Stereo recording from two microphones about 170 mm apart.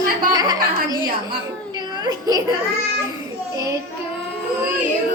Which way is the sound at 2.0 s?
20° right (ahead or behind).